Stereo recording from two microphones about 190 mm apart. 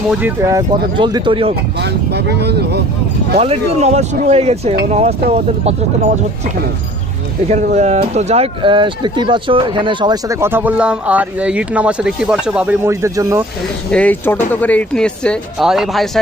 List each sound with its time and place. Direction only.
0.1 s speech: 10° right (ahead or behind); by 1.5 s 30° right (ahead or behind)
1.8 s speech: 60° right (ahead or behind)
3.3 s speech: 35° right (ahead or behind)
7.4 s speech: 40° right (ahead or behind); by 13.4 s 15° right (ahead or behind)
13.9 s speech: 10° left (ahead or behind)